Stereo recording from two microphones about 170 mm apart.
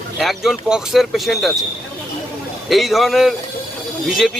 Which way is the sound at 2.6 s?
Centre (ahead or behind).